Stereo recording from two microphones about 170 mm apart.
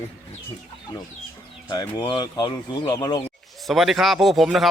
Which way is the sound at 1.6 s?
25° left (ahead or behind).